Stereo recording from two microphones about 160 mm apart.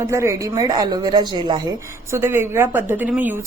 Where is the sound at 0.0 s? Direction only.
20° right (ahead or behind).